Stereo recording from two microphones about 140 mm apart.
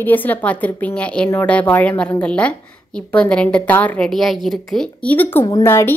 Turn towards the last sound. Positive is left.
turn(degrees=15)  # may be behind; listen again after turning